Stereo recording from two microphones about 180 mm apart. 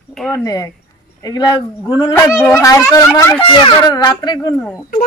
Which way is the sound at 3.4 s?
25° left (ahead or behind).